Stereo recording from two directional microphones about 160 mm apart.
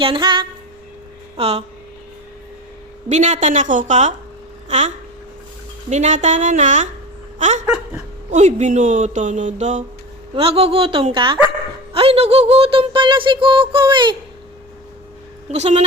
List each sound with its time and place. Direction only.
0.0 s speech: 30° right (ahead or behind)
1.4 s speech: 40° right (ahead or behind)
3.1 s speech: 45° right (ahead or behind)
5.9 s speech: 45° right (ahead or behind)
7.3 s dog: 50° right (ahead or behind)
8.3 s speech: 45° right (ahead or behind)
10.3 s speech: 35° right (ahead or behind)
15.5 s speech: 40° right (ahead or behind)